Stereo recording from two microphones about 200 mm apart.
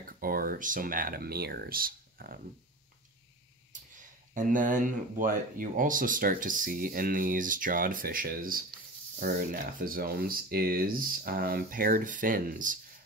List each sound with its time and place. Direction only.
0.0 s speech: 45° right (ahead or behind)
4.3 s speech: 40° right (ahead or behind)